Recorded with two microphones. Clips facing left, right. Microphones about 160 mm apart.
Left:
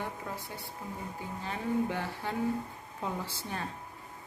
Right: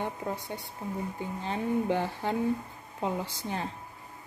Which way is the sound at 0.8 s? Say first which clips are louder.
Right 6 dB; 25° right (ahead or behind).